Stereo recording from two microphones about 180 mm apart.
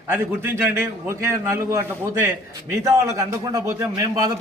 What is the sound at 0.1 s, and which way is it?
A man's voice, 10° right (ahead or behind).